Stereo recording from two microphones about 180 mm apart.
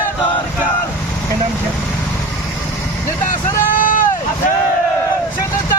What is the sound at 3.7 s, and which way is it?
Vehicle, 50° left (ahead or behind).